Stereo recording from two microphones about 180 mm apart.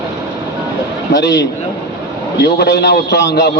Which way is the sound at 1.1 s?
70° left (ahead or behind).